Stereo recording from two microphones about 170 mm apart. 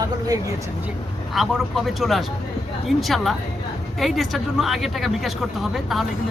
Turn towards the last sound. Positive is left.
turn(degrees=0)  # may be behind; listen again after turning